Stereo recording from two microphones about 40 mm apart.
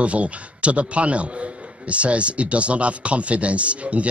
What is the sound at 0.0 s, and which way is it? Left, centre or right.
A man's voice, right.